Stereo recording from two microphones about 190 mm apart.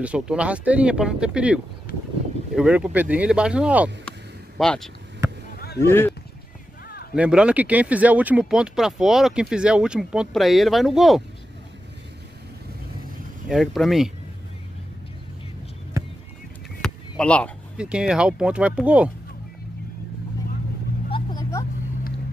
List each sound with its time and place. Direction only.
0.0 s speech: 5° right (ahead or behind)
5.6 s a sound: 60° left (ahead or behind)
5.9 s speech: 10° left (ahead or behind)
7.2 s speech: 5° right (ahead or behind)
13.5 s speech: centre (ahead or behind)
16.8 s a sound: 5° left (ahead or behind)
17.7 s speech: 5° right (ahead or behind)
21.1 s vehicle: 20° left (ahead or behind)